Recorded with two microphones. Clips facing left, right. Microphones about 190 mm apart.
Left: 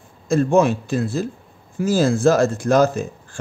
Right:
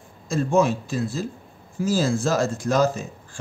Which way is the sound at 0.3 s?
60° left (ahead or behind).